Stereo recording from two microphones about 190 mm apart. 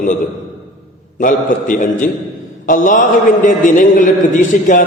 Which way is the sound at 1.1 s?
45° left (ahead or behind).